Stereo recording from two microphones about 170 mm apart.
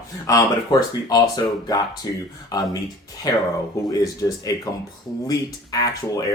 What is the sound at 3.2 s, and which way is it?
Speech, 20° left (ahead or behind).